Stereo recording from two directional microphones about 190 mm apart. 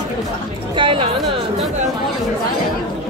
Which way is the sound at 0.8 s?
25° right (ahead or behind).